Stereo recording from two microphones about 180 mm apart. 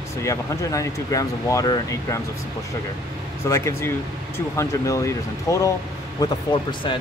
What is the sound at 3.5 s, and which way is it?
Speech, 15° left (ahead or behind).